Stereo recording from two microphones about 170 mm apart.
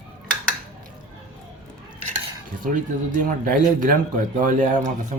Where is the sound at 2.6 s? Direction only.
50° right (ahead or behind).